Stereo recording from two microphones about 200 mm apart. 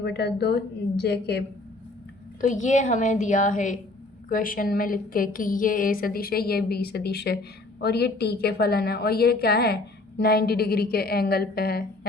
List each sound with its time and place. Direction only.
0.0 s a woman's voice: 55° left (ahead or behind)
2.5 s a woman's voice: 40° left (ahead or behind)